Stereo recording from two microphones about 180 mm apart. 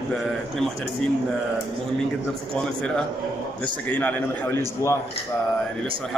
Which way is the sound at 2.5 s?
5° left (ahead or behind).